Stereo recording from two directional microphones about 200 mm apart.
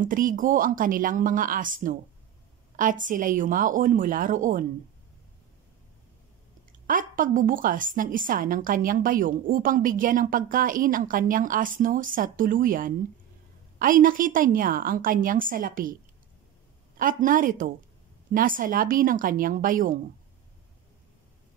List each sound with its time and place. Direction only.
0.0 s a woman's voice: 45° right (ahead or behind)
6.9 s a woman's voice: 40° right (ahead or behind)